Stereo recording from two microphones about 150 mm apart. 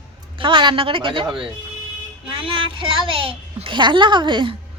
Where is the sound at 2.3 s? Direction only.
35° right (ahead or behind).